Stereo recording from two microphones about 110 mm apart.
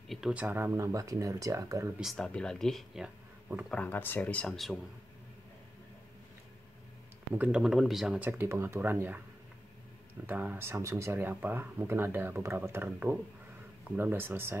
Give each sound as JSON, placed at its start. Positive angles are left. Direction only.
{"t": 0.3, "sound": "speech", "side_deg": -15}
{"t": 2.0, "sound": "speech", "side_deg": 0}
{"t": 3.6, "sound": "speech", "side_deg": 10}
{"t": 7.3, "sound": "speech", "side_deg": -15}
{"t": 7.6, "sound": "speech", "side_deg": -5}
{"t": 8.2, "sound": "speech", "side_deg": -20}
{"t": 10.2, "sound": "speech", "side_deg": -15}